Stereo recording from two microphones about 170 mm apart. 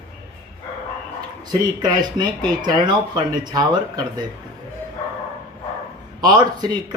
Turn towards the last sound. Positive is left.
turn(degrees=-25)  # may be behind; listen again after turning